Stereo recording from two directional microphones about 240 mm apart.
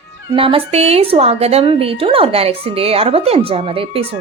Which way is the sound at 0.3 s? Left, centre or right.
Right.